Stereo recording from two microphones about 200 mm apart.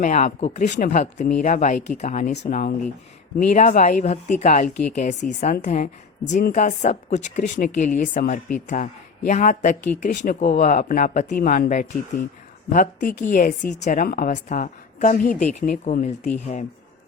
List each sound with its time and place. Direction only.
0.0 s a woman's voice: 40° left (ahead or behind)